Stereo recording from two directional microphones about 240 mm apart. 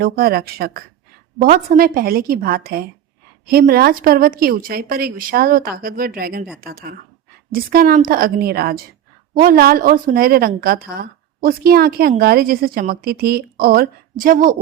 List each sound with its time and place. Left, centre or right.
0.0 s a woman's voice: right